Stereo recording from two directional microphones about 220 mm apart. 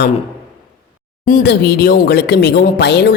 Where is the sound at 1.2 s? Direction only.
45° left (ahead or behind).